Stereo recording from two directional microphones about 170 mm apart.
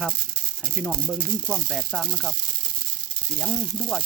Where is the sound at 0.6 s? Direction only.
Centre (ahead or behind).